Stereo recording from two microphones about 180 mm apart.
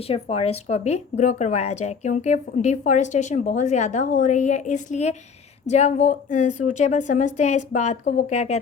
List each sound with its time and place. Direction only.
0.1 s a woman's voice: 35° left (ahead or behind)